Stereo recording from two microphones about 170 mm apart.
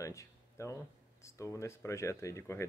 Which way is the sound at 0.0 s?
15° left (ahead or behind).